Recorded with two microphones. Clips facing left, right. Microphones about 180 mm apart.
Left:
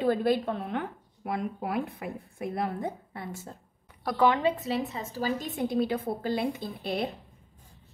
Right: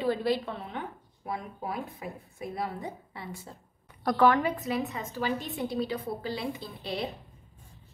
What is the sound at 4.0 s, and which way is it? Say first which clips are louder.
Speech: right 1 dB; 5° left (ahead or behind).